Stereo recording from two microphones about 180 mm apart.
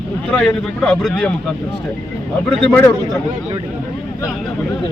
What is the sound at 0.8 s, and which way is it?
Speech, 5° left (ahead or behind).